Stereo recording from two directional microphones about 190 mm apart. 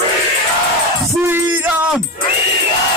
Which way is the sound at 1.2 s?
10° right (ahead or behind).